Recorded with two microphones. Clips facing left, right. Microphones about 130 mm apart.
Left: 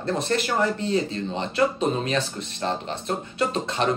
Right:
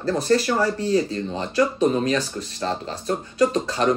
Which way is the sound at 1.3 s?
30° left (ahead or behind).